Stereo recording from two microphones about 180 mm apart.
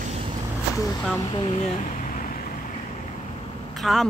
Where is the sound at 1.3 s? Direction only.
35° left (ahead or behind).